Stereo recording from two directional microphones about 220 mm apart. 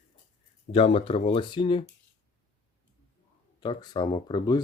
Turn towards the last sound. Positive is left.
turn(degrees=20)  # may be behind; listen again after turning